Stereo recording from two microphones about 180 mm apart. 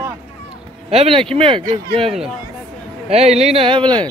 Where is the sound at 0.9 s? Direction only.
35° right (ahead or behind).